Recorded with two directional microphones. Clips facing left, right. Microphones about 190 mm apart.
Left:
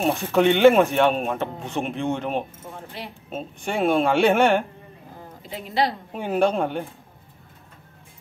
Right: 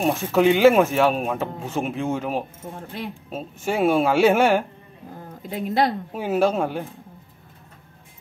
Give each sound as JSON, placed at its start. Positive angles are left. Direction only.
{"t": 0.0, "sound": "speech", "side_deg": 0}
{"t": 5.5, "sound": "a woman's voice", "side_deg": -50}
{"t": 6.1, "sound": "speech", "side_deg": -5}